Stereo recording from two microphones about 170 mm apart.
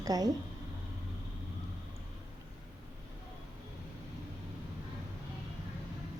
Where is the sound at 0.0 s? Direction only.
20° right (ahead or behind).